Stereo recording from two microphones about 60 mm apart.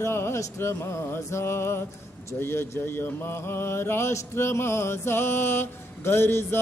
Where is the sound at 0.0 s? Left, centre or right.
Left.